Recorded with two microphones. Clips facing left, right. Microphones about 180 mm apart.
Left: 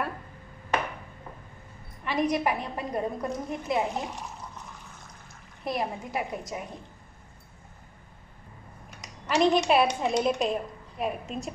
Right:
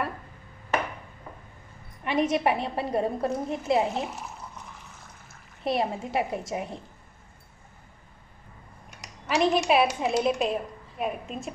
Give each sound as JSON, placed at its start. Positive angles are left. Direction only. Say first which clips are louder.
{"t": 2.0, "sound": "a woman's voice", "louder": "right 2 dB", "side_deg": -25}
{"t": 4.0, "sound": "speech", "louder": "right 2 dB", "side_deg": -5}
{"t": 5.6, "sound": "a woman's voice", "louder": "right 4 dB", "side_deg": -25}
{"t": 9.0, "sound": "a woman's voice", "louder": "left 1 dB", "side_deg": 0}